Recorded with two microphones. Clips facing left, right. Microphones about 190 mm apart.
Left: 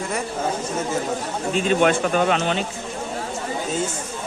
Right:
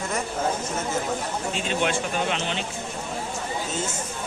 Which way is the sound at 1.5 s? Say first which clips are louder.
Left 9 dB; 50° left (ahead or behind).